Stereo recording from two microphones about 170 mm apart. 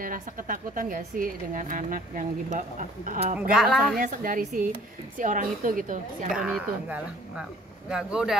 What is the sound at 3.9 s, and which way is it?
A woman's voice, 50° right (ahead or behind).